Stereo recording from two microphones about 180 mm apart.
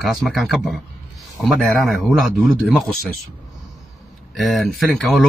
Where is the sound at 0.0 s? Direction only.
Centre (ahead or behind).